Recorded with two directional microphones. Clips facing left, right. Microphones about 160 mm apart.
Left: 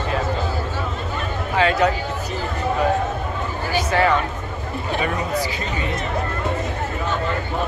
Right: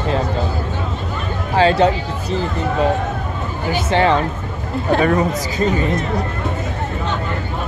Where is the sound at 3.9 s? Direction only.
30° right (ahead or behind).